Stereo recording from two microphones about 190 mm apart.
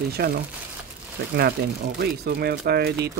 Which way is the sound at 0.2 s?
55° right (ahead or behind).